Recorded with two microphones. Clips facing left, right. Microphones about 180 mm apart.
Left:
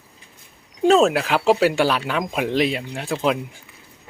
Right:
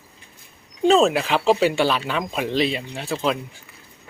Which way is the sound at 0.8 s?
5° left (ahead or behind).